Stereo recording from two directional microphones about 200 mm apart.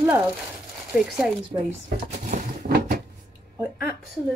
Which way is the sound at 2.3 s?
50° right (ahead or behind).